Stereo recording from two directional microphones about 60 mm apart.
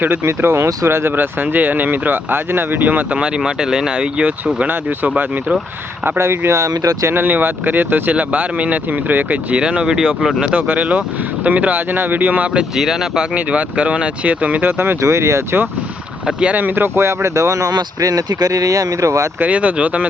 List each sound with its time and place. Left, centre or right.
0.3 s speech: right
6.1 s speech: right
6.6 s speech: right
7.1 s speech: right; by 10.5 s centre
10.5 s speech: right
12.7 s speech: centre
13.3 s speech: right
14.7 s speech: right
15.0 s speech: right
16.2 s speech: centre
16.6 s speech: right
19.4 s speech: right